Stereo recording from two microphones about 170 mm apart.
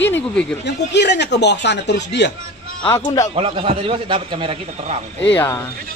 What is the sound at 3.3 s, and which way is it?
A man's voice, 35° right (ahead or behind).